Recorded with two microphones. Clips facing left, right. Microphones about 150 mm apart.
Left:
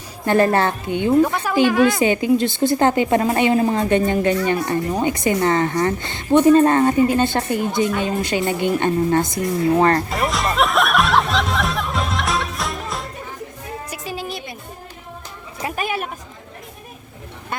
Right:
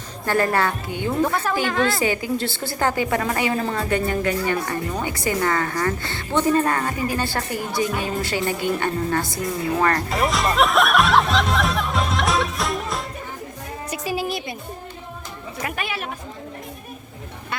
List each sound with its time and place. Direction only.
0.3 s a woman's voice: 25° left (ahead or behind)
10.1 s music: centre (ahead or behind)
13.9 s a sound: 5° right (ahead or behind)
15.6 s speech: 40° left (ahead or behind)